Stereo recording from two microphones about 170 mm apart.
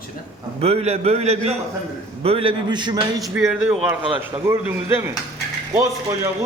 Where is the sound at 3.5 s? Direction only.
5° right (ahead or behind).